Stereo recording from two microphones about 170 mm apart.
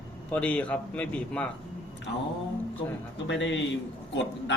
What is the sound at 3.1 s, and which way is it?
Speech, 90° left.